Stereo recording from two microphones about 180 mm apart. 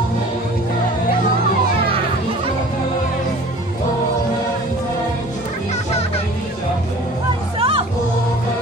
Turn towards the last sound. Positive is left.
turn(degrees=-30)  # may be behind; listen again after turning